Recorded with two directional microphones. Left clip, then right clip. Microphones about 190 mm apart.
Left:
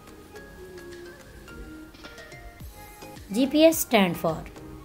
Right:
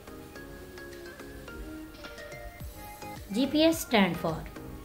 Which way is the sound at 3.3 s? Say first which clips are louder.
Left 6 dB; 25° left (ahead or behind).